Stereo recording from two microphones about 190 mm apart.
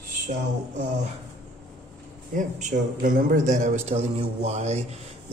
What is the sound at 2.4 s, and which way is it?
Speech, 40° right (ahead or behind).